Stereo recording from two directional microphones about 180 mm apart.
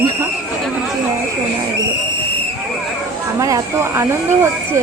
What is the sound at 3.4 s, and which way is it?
Speech, 20° right (ahead or behind).